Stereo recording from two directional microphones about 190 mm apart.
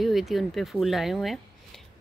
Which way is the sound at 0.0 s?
Centre (ahead or behind).